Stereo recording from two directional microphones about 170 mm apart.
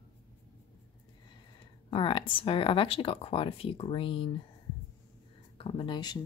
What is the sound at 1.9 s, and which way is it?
Speech, 30° left (ahead or behind).